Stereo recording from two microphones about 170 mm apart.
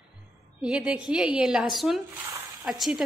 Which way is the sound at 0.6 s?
5° right (ahead or behind).